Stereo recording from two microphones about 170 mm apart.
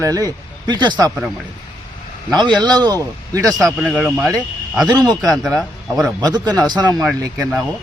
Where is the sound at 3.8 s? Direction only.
5° right (ahead or behind).